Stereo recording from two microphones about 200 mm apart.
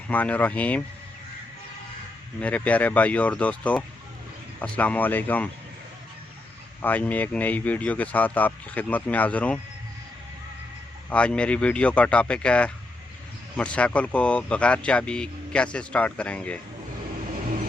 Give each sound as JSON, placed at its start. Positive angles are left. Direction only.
{"t": 0.1, "sound": "speech", "side_deg": 10}
{"t": 2.4, "sound": "speech", "side_deg": 5}
{"t": 6.8, "sound": "speech", "side_deg": 10}
{"t": 11.1, "sound": "speech", "side_deg": 5}